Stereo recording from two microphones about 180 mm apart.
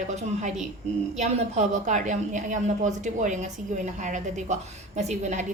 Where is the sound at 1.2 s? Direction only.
40° right (ahead or behind).